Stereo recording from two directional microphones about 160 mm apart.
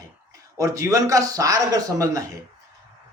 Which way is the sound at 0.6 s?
20° right (ahead or behind).